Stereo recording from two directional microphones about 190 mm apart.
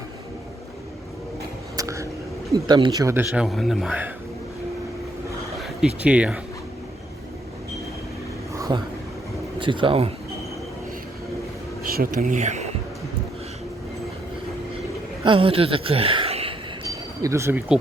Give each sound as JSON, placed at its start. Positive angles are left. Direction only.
{"t": 1.7, "sound": "a sound", "side_deg": -15}
{"t": 2.6, "sound": "speech", "side_deg": -20}
{"t": 3.4, "sound": "a man's voice", "side_deg": 0}
{"t": 5.6, "sound": "speech", "side_deg": -5}
{"t": 8.5, "sound": "a sound", "side_deg": -15}
{"t": 9.6, "sound": "speech", "side_deg": -25}
{"t": 11.9, "sound": "speech", "side_deg": -50}
{"t": 15.2, "sound": "a woman's voice", "side_deg": -25}
{"t": 17.2, "sound": "speech", "side_deg": -15}